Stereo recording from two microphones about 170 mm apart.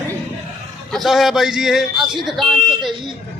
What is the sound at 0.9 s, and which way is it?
A man's voice, centre (ahead or behind).